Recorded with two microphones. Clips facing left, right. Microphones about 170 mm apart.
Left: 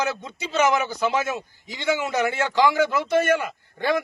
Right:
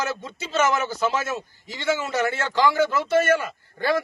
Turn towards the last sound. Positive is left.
turn(degrees=15)  # may be behind; listen again after turning